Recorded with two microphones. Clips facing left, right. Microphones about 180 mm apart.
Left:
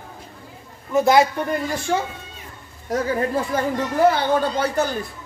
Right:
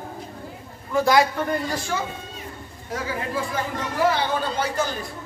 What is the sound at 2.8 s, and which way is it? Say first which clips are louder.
Speech: left 7 dB; 45° left (ahead or behind).